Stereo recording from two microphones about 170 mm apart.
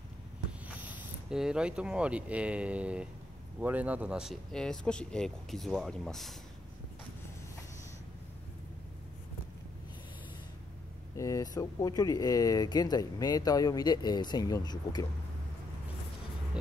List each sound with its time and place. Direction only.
0.7 s speech: 10° right (ahead or behind)
11.1 s speech: 20° left (ahead or behind)